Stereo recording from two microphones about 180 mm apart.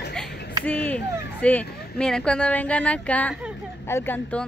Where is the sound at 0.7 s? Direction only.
10° left (ahead or behind).